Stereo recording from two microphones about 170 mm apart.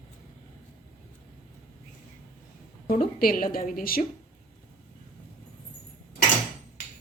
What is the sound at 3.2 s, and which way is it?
Speech, 60° left (ahead or behind).